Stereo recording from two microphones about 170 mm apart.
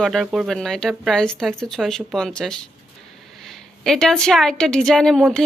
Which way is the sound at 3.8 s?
5° left (ahead or behind).